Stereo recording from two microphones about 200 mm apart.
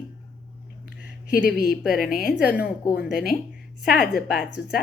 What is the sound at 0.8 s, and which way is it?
A woman's voice, 50° left (ahead or behind).